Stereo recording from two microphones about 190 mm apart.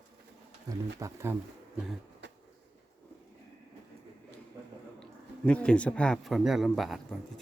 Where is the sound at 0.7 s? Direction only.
15° right (ahead or behind).